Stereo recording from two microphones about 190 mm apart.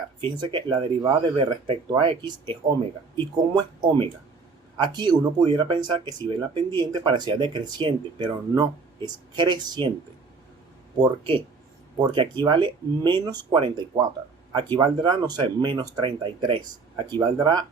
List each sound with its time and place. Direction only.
0.3 s speech: 25° right (ahead or behind)
11.0 s speech: 25° right (ahead or behind)